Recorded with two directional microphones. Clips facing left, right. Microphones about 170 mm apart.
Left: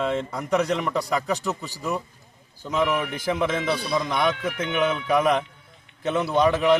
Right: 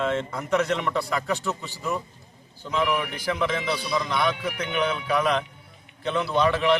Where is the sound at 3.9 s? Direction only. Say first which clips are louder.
Left 1 dB; 25° left (ahead or behind).